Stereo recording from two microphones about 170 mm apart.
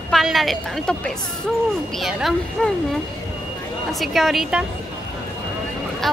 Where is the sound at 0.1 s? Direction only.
Centre (ahead or behind).